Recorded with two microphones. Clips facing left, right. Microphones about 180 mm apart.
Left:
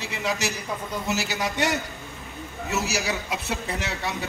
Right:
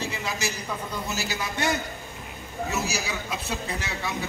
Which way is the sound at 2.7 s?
75° left (ahead or behind).